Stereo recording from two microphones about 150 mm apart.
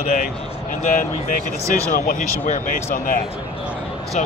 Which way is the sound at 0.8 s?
60° left (ahead or behind).